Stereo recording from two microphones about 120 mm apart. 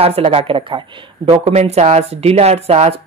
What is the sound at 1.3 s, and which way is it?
Speech, 60° right (ahead or behind).